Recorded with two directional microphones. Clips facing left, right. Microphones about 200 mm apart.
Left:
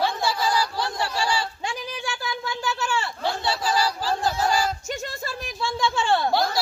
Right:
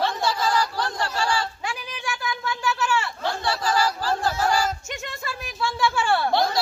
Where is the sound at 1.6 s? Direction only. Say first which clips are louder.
Left 1 dB; 30° left (ahead or behind).